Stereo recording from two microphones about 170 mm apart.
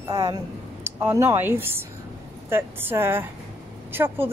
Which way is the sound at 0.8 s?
15° right (ahead or behind).